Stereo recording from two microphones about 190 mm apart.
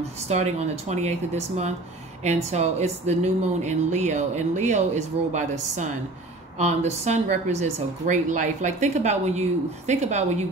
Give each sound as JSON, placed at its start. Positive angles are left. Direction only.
{"t": 0.0, "sound": "a woman's voice", "side_deg": -35}